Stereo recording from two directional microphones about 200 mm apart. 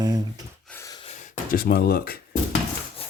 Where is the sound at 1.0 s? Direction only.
35° left (ahead or behind).